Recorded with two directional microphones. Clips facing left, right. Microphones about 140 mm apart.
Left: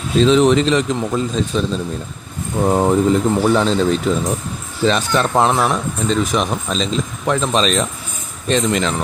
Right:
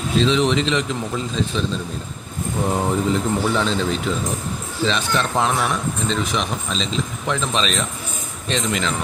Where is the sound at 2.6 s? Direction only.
40° left (ahead or behind).